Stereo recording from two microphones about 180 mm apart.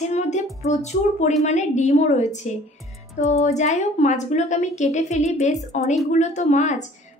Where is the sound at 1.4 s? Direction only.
40° left (ahead or behind).